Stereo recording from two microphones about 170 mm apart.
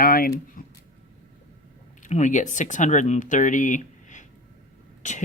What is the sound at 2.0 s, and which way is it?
Speech, 45° left (ahead or behind).